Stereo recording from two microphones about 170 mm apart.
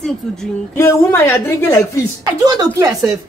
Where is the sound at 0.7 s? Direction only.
15° left (ahead or behind).